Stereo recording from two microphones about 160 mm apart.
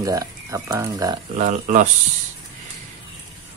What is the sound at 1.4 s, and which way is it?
Speech, 50° right (ahead or behind).